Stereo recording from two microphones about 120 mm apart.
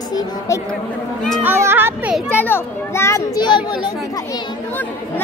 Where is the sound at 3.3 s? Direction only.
40° left (ahead or behind).